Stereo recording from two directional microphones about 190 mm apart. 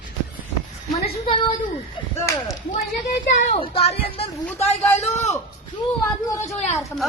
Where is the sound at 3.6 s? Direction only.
30° left (ahead or behind).